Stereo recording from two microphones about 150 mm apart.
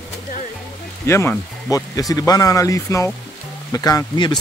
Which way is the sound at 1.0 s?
15° left (ahead or behind).